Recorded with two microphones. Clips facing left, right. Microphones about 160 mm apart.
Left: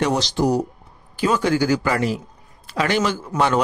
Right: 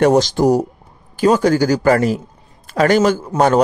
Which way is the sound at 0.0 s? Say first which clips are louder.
Right 7 dB; 45° right (ahead or behind).